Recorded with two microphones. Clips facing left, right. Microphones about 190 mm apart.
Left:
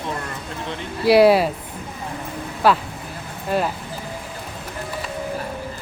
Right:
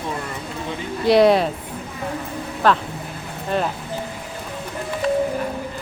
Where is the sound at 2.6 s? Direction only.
10° left (ahead or behind).